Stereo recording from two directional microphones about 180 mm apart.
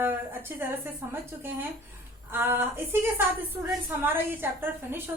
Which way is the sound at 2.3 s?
10° right (ahead or behind).